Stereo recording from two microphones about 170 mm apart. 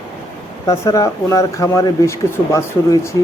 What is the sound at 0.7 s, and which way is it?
Speech, 20° left (ahead or behind).